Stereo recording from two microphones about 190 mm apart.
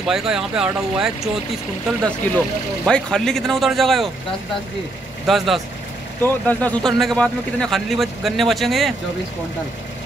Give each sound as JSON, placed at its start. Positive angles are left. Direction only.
{"t": 0.0, "sound": "a man's voice", "side_deg": -5}
{"t": 2.8, "sound": "a man's voice", "side_deg": 0}
{"t": 5.2, "sound": "a man's voice", "side_deg": 0}